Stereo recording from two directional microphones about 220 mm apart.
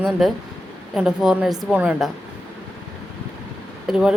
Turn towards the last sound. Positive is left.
turn(degrees=-5)  # may be behind; listen again after turning